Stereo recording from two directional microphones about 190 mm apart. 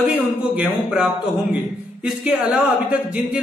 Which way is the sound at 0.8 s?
5° right (ahead or behind).